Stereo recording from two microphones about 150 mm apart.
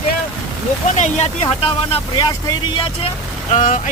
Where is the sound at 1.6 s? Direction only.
30° left (ahead or behind).